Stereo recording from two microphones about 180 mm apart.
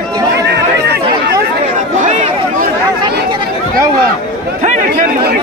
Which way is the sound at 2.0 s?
45° right (ahead or behind).